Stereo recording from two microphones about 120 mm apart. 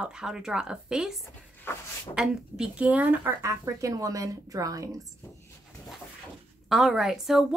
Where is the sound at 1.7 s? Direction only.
20° left (ahead or behind).